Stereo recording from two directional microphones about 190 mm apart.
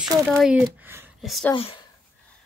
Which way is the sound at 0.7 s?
10° right (ahead or behind).